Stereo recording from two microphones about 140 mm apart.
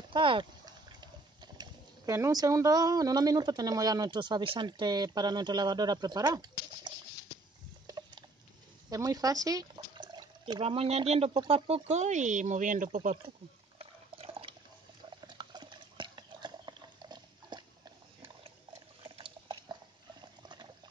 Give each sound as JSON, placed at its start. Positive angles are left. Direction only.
{"t": 0.1, "sound": "speech", "side_deg": -35}
{"t": 7.8, "sound": "a sound", "side_deg": -30}
{"t": 8.9, "sound": "speech", "side_deg": -25}
{"t": 12.9, "sound": "speech", "side_deg": -50}
{"t": 13.7, "sound": "liquid", "side_deg": -40}
{"t": 15.1, "sound": "stir", "side_deg": -30}
{"t": 19.0, "sound": "liquid", "side_deg": -35}